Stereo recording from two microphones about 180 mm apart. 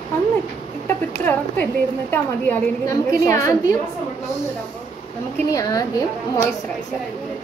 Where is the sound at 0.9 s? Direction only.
10° left (ahead or behind).